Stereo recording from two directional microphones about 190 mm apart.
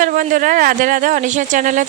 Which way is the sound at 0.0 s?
45° right (ahead or behind).